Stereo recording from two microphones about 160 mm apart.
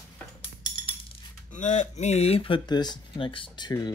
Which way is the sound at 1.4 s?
50° left (ahead or behind).